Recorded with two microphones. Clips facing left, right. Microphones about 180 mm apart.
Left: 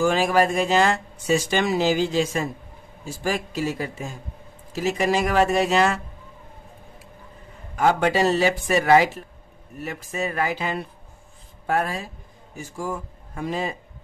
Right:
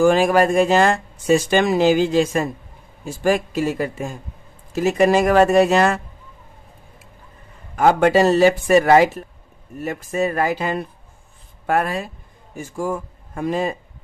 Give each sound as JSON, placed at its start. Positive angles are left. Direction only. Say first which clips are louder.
{"t": 0.0, "sound": "speech", "louder": "right 5 dB", "side_deg": -50}
{"t": 7.7, "sound": "speech", "louder": "right 5 dB", "side_deg": -50}
{"t": 11.6, "sound": "speech", "louder": "right 4 dB", "side_deg": -70}
{"t": 12.5, "sound": "speech", "louder": "right 5 dB", "side_deg": -50}